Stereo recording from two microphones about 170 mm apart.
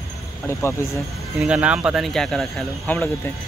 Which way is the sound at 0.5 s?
15° left (ahead or behind).